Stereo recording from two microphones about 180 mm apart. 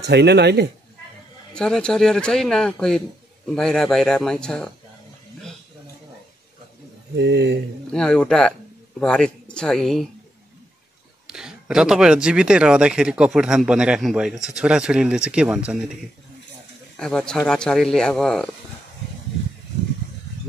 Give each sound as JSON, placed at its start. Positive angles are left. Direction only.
{"t": 0.0, "sound": "a man's voice", "side_deg": -65}
{"t": 1.5, "sound": "speech", "side_deg": 5}
{"t": 7.2, "sound": "a man's voice", "side_deg": -75}
{"t": 7.8, "sound": "speech", "side_deg": 5}
{"t": 11.2, "sound": "speech", "side_deg": -5}
{"t": 16.9, "sound": "speech", "side_deg": 5}